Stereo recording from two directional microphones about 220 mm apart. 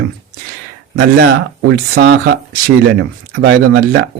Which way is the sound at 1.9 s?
45° right (ahead or behind).